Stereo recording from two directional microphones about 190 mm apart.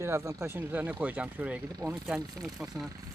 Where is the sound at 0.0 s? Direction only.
15° right (ahead or behind).